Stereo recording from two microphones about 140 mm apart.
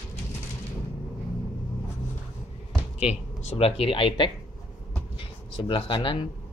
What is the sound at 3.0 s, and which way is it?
Speech, 50° left (ahead or behind).